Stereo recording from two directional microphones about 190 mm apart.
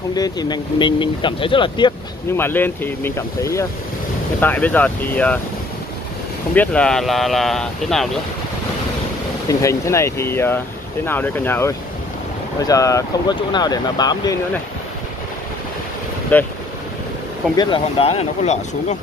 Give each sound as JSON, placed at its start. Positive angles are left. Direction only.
{"t": 0.1, "sound": "speech", "side_deg": 20}
{"t": 2.3, "sound": "speech", "side_deg": 10}
{"t": 6.5, "sound": "speech", "side_deg": 5}
{"t": 9.5, "sound": "speech", "side_deg": 15}
{"t": 16.3, "sound": "speech", "side_deg": 10}
{"t": 17.6, "sound": "speech", "side_deg": 25}